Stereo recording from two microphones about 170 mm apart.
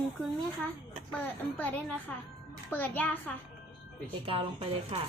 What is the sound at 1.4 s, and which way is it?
A woman's voice, 10° left (ahead or behind).